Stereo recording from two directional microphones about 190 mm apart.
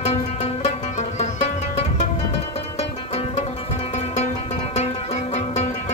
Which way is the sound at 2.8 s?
35° left (ahead or behind).